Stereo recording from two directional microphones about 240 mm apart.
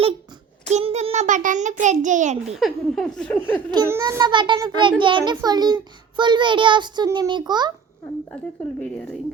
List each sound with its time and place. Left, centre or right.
0.6 s child singing: right
1.8 s a child's voice: right
2.5 s laughter: centre
3.7 s a child's voice: centre